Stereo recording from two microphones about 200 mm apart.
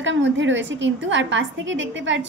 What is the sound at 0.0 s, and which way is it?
A woman's voice, 65° right (ahead or behind).